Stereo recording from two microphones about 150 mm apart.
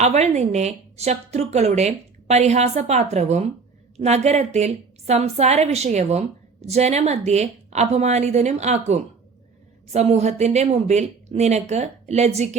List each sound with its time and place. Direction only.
0.0 s a woman's voice: 50° right (ahead or behind)